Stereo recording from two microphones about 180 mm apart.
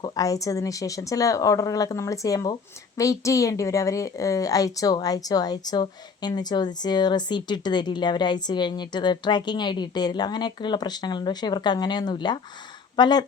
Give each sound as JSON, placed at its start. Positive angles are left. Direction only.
{"t": 0.0, "sound": "speech", "side_deg": 20}